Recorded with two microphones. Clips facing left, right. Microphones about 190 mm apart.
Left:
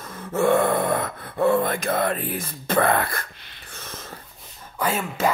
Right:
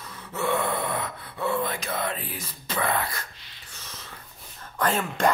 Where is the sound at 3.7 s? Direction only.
55° left (ahead or behind).